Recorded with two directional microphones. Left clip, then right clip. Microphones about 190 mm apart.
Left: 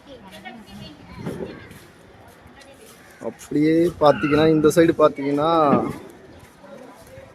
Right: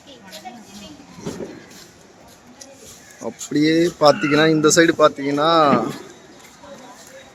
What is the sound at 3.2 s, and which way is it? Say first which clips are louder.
Speech: right 2 dB; centre (ahead or behind).